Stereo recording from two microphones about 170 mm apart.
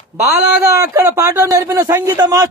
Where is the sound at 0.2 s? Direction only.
10° right (ahead or behind).